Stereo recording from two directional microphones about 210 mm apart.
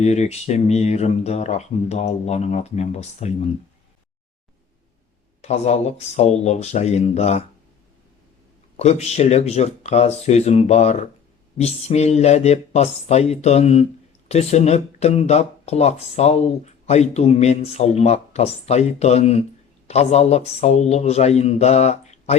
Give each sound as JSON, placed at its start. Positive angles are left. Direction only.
{"t": 0.0, "sound": "speech", "side_deg": 30}
{"t": 5.4, "sound": "speech", "side_deg": 30}
{"t": 8.8, "sound": "speech", "side_deg": 30}